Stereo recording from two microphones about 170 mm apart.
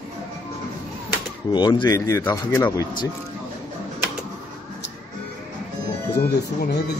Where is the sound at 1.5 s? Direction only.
25° left (ahead or behind).